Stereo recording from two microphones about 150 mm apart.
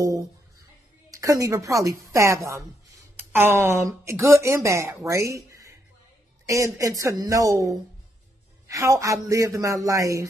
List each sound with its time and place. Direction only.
1.1 s a woman's voice: 20° right (ahead or behind)